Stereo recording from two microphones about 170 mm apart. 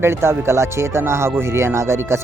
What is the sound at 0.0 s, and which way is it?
Speech, 15° right (ahead or behind).